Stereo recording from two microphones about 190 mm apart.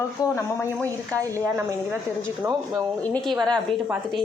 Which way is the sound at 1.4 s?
15° right (ahead or behind).